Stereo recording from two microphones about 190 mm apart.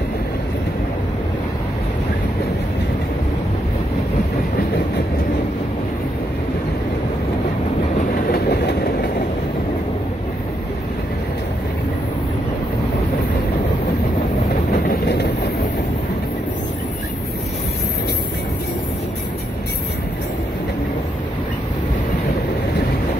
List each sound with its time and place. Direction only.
8.3 s train: 60° left (ahead or behind)